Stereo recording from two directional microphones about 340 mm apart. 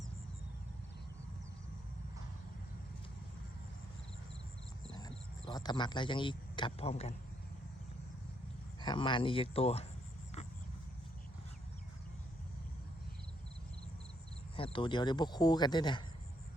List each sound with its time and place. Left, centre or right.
4.9 s a sound: centre
8.8 s speech: centre
14.5 s speech: centre